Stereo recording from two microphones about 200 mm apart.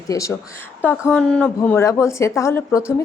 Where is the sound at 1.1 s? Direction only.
5° left (ahead or behind).